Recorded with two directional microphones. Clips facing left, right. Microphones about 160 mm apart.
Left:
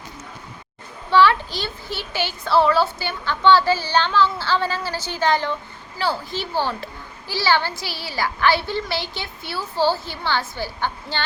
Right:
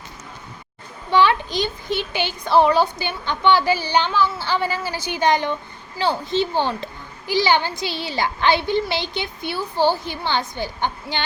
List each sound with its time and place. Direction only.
1.1 s a child's voice: 15° right (ahead or behind)